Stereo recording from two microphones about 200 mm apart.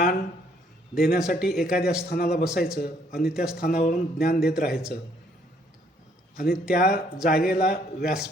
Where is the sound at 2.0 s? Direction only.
50° left (ahead or behind).